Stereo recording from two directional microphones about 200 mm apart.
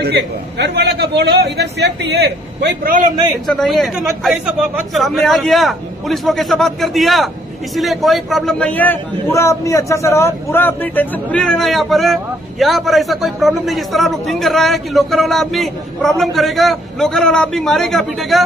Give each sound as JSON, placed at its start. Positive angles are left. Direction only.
{"t": 0.0, "sound": "a man's voice", "side_deg": -55}
{"t": 3.4, "sound": "a man's voice", "side_deg": 0}